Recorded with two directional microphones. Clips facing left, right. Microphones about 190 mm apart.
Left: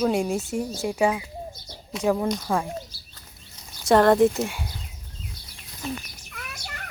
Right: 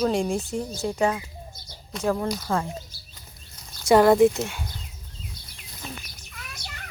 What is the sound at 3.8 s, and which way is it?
Speech, 5° right (ahead or behind).